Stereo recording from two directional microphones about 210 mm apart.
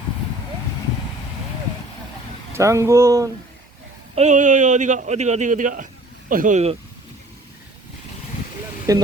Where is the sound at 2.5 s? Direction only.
15° right (ahead or behind).